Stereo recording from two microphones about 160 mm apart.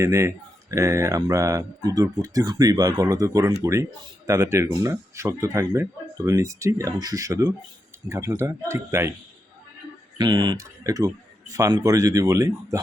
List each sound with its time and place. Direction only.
0.0 s speech: 20° right (ahead or behind)
10.2 s speech: 25° right (ahead or behind)